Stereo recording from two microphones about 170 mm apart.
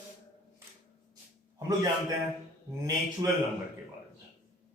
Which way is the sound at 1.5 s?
20° right (ahead or behind).